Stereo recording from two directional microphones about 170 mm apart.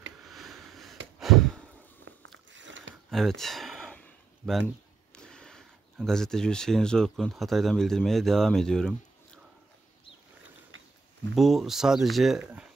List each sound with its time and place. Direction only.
0.2 s a sound: centre (ahead or behind)
1.2 s sigh: centre (ahead or behind)
2.0 s biting: 90° right
3.1 s a sound: centre (ahead or behind)
5.1 s speech: 5° left (ahead or behind)
11.3 s speech: centre (ahead or behind)